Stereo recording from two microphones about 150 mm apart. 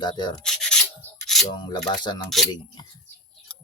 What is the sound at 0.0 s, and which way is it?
Speech, 30° left (ahead or behind).